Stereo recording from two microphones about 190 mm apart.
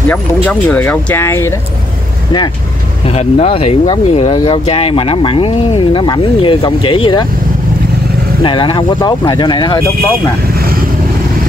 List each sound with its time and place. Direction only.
0.1 s speech: 10° left (ahead or behind)
3.2 s speech: 30° left (ahead or behind)
8.4 s speech: 25° left (ahead or behind)